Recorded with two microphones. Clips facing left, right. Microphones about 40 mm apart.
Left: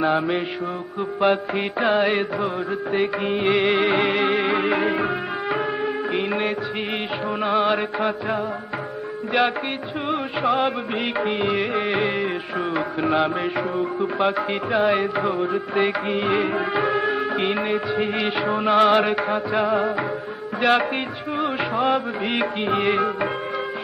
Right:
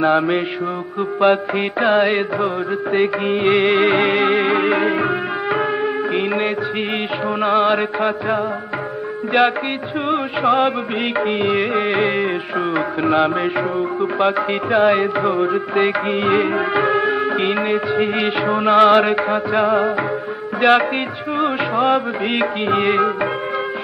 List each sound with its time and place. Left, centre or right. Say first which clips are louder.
1.2 s music of bollywood: right 5 dB; centre
6.1 s music of bollywood: right 3 dB; centre
7.4 s music: right 5 dB; centre
10.0 s music of bollywood: right 5 dB; centre
12.2 s music: right 5 dB; right
13.0 s music of bollywood: right 5 dB; centre
21.4 s music: right 5 dB; centre